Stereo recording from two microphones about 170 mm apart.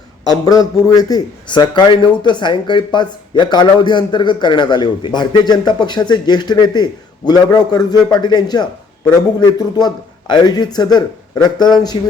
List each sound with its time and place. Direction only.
0.3 s a man's voice: 20° left (ahead or behind)